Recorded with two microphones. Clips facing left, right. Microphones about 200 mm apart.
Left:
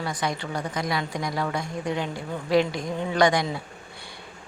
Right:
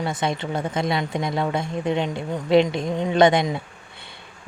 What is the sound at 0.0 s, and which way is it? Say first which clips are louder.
A woman's voice: right 4 dB; 25° right (ahead or behind).